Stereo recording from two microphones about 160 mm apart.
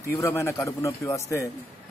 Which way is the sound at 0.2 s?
15° left (ahead or behind).